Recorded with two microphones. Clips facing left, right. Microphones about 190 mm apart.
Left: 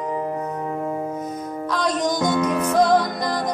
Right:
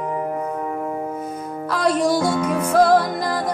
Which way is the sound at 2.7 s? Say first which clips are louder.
Right 3 dB; 5° right (ahead or behind).